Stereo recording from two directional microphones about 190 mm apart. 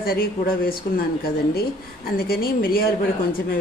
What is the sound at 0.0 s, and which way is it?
A woman's voice, 50° left (ahead or behind).